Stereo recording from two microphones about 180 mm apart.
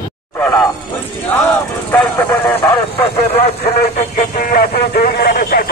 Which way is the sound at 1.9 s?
10° left (ahead or behind).